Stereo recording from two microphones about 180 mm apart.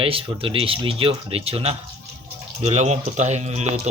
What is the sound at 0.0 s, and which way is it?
Speech, 30° right (ahead or behind).